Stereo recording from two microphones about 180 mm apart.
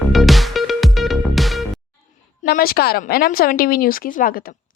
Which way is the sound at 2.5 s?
55° left (ahead or behind).